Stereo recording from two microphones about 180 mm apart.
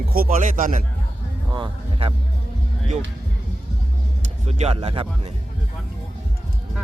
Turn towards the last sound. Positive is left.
turn(degrees=-30)  # may be behind; listen again after turning